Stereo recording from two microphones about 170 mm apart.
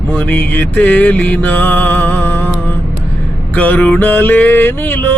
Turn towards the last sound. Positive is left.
turn(degrees=10)  # may be behind; listen again after turning